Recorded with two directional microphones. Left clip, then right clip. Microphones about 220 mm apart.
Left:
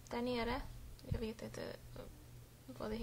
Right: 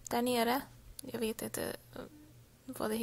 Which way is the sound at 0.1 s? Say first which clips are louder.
Right 8 dB; 40° right (ahead or behind).